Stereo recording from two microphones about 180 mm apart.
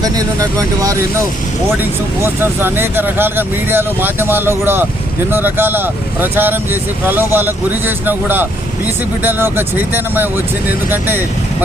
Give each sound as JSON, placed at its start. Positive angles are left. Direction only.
{"t": 0.0, "sound": "speech", "side_deg": -20}